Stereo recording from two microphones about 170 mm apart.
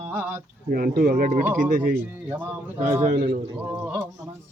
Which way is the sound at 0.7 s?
55° right (ahead or behind).